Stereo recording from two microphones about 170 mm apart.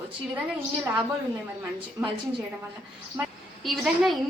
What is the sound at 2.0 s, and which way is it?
Speech, 15° right (ahead or behind).